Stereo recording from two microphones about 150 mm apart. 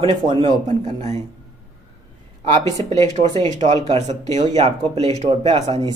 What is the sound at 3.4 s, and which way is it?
Speech, 50° right (ahead or behind).